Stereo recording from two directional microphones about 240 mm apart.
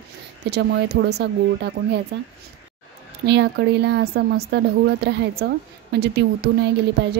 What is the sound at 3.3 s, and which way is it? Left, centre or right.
Speech, right.